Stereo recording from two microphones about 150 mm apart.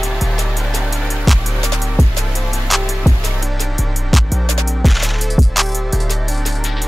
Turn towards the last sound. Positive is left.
turn(degrees=0)  # may be behind; listen again after turning